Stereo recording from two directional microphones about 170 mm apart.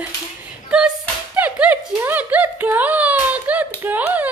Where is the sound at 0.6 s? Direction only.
5° right (ahead or behind).